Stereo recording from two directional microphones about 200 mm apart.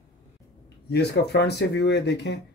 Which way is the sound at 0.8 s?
60° left (ahead or behind).